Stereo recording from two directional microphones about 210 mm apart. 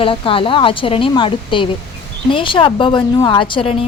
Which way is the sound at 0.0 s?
25° left (ahead or behind).